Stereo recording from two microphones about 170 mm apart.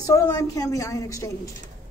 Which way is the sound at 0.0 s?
20° left (ahead or behind).